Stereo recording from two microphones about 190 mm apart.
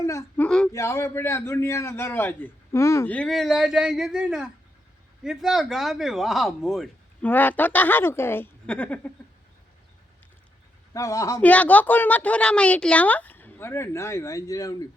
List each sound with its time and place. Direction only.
0.0 s speech: 15° left (ahead or behind)
0.4 s speech: 5° left (ahead or behind)
0.7 s speech: 15° left (ahead or behind)
10.9 s speech: 15° left (ahead or behind)